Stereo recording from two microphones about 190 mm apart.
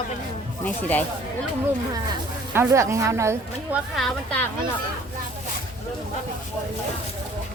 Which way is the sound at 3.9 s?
5° left (ahead or behind).